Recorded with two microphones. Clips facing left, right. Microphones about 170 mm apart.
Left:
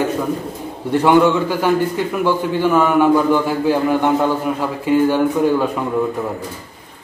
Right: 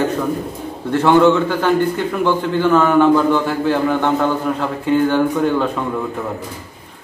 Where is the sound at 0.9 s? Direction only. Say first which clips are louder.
Right 1 dB; 10° left (ahead or behind).